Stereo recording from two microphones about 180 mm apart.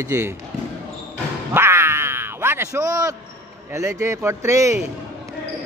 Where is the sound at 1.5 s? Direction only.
15° right (ahead or behind).